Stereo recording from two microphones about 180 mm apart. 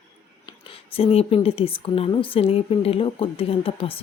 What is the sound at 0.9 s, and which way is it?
Speech, 30° left (ahead or behind).